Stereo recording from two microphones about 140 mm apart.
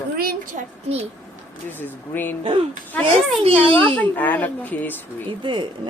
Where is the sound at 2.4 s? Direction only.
35° right (ahead or behind).